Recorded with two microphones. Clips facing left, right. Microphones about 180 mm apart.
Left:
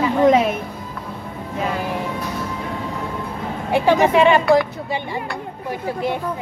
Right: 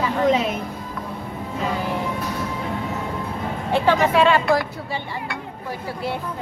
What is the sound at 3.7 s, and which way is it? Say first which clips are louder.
Speech: left 3 dB; 15° left (ahead or behind).